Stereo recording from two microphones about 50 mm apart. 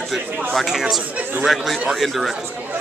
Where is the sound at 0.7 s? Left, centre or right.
Centre.